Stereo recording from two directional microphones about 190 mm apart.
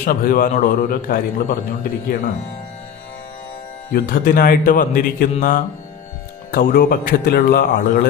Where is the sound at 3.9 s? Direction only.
50° left (ahead or behind).